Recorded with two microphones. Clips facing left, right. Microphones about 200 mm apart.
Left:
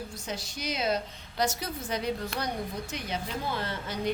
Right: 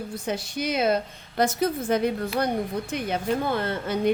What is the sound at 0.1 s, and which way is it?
A woman's voice, 60° right (ahead or behind).